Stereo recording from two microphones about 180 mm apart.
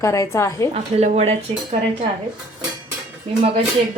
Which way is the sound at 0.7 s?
35° right (ahead or behind).